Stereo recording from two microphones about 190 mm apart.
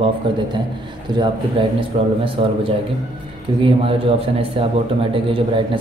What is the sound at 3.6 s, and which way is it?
Speech, 30° right (ahead or behind).